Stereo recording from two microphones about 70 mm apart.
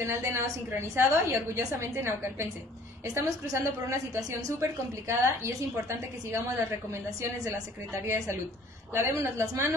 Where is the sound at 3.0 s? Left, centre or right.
Right.